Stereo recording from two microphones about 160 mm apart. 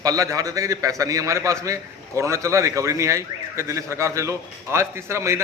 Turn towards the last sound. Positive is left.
turn(degrees=-15)  # may be behind; listen again after turning